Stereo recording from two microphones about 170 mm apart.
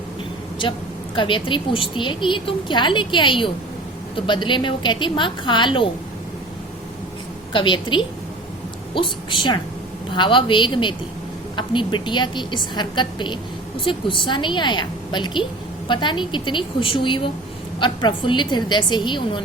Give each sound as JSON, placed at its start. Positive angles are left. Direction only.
{"t": 1.1, "sound": "a woman's voice", "side_deg": 30}
{"t": 7.5, "sound": "a woman's voice", "side_deg": 30}